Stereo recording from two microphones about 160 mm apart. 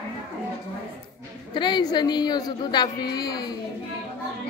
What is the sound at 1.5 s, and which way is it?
Speech, 30° left (ahead or behind).